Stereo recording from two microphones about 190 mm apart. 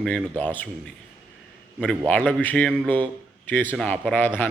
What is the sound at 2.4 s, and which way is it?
A man's voice, 5° left (ahead or behind).